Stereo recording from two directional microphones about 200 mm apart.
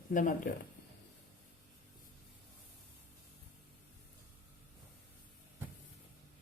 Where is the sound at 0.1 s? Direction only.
40° left (ahead or behind).